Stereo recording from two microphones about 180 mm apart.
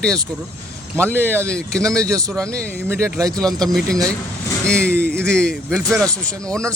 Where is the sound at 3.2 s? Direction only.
20° right (ahead or behind).